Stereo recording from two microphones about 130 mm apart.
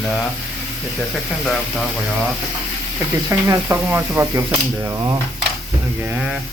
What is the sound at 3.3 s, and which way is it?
Speech, 20° right (ahead or behind).